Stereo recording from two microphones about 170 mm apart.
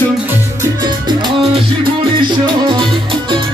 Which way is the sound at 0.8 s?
25° right (ahead or behind).